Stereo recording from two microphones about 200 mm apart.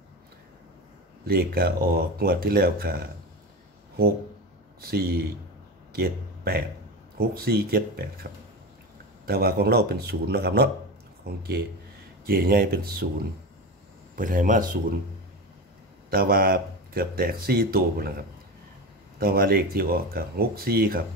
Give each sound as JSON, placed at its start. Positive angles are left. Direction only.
{"t": 1.2, "sound": "speech", "side_deg": -50}
{"t": 4.8, "sound": "speech", "side_deg": -50}
{"t": 14.1, "sound": "speech", "side_deg": -40}
{"t": 16.1, "sound": "speech", "side_deg": -50}
{"t": 19.1, "sound": "speech", "side_deg": -45}